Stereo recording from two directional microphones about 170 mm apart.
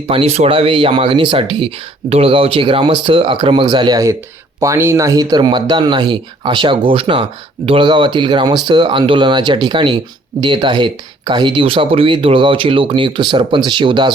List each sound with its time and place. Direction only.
0.1 s speech: 35° right (ahead or behind)